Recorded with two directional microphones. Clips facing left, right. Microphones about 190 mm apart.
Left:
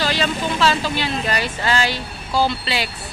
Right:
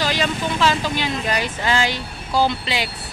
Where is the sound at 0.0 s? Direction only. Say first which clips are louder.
Left 1 dB; 15° right (ahead or behind).